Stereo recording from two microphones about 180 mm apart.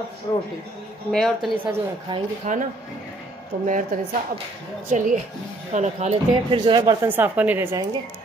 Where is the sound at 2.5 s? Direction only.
40° right (ahead or behind).